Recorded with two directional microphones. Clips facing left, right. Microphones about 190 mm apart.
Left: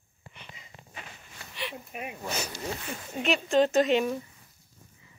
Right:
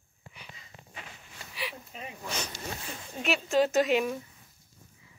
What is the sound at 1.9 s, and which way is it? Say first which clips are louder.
Speech: left 5 dB; 10° left (ahead or behind).